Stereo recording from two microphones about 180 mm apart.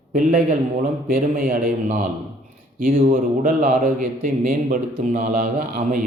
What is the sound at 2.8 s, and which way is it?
A man's voice, 50° right (ahead or behind).